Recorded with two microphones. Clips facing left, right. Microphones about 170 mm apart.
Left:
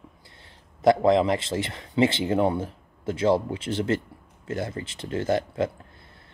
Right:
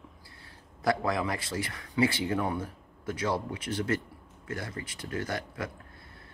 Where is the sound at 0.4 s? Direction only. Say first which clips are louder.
Left 8 dB; 20° left (ahead or behind).